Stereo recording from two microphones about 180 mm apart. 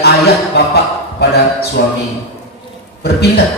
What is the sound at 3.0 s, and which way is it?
Music, 60° left (ahead or behind).